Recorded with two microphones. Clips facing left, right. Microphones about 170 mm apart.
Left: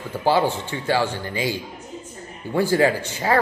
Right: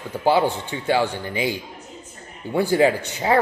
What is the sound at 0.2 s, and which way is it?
A man's voice, 15° right (ahead or behind).